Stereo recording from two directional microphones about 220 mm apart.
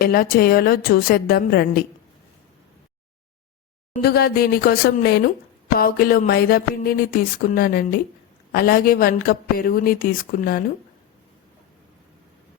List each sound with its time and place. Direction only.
0.0 s a woman's voice: 45° left (ahead or behind)
3.9 s a woman's voice: 45° left (ahead or behind)